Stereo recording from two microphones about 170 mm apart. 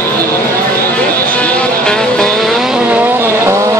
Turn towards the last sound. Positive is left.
turn(degrees=-15)  # may be behind; listen again after turning